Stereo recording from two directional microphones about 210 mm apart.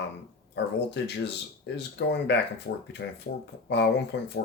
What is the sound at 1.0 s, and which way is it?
Speech, 55° left (ahead or behind).